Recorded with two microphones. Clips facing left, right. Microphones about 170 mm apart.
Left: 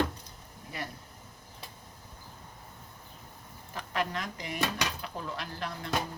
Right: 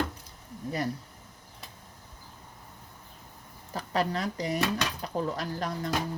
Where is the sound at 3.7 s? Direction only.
35° right (ahead or behind).